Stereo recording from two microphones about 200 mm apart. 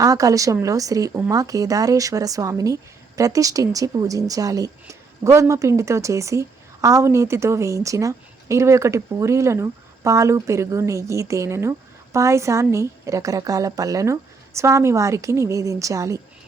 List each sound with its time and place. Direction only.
0.0 s speech: 15° right (ahead or behind)